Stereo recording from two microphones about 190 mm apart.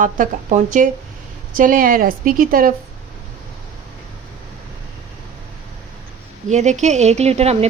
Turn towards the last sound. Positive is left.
turn(degrees=-35)  # may be behind; listen again after turning